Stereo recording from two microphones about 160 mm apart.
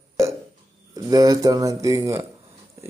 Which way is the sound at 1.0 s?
25° right (ahead or behind).